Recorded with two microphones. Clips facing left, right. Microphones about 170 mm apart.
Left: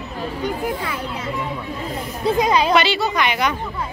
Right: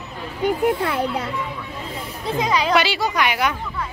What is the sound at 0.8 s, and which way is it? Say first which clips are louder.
Speech: right 5 dB; 60° right (ahead or behind).